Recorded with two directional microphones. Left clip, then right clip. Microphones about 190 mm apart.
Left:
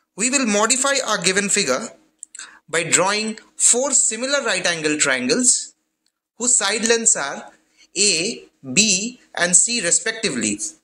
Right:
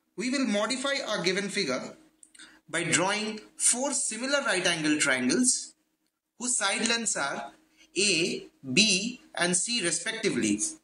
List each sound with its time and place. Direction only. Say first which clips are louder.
0.1 s a man's voice: left 9 dB; 60° left (ahead or behind)
2.3 s speech: left 10 dB; 50° left (ahead or behind)
6.3 s speech: left 8 dB; 40° left (ahead or behind)